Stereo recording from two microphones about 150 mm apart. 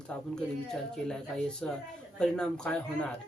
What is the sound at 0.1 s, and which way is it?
Speech, 5° left (ahead or behind).